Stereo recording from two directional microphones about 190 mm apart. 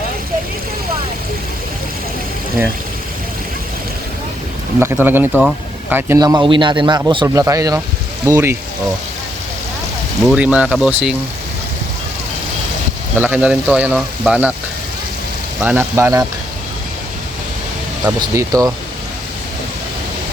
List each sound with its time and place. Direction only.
5.0 s speech: 10° right (ahead or behind)
5.3 s speech: centre (ahead or behind)
5.9 s speech: 10° right (ahead or behind)
10.2 s speech: 5° right (ahead or behind)
13.1 s speech: 10° right (ahead or behind)
15.6 s speech: 10° right (ahead or behind)
18.0 s speech: 15° right (ahead or behind)